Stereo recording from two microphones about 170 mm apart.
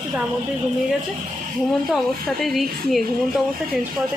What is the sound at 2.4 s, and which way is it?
Speech, centre (ahead or behind).